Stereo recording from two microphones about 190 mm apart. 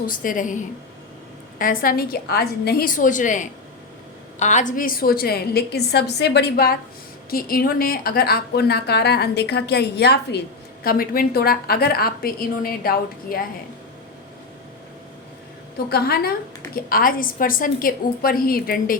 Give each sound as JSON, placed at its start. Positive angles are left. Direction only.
{"t": 0.0, "sound": "a woman's voice", "side_deg": 45}
{"t": 10.8, "sound": "a woman's voice", "side_deg": 50}
{"t": 15.9, "sound": "a woman's voice", "side_deg": 55}